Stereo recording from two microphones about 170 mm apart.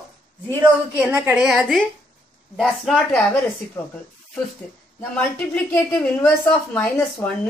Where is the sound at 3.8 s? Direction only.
15° left (ahead or behind).